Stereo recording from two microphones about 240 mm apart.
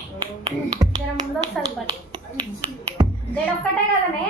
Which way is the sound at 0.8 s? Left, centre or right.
Centre.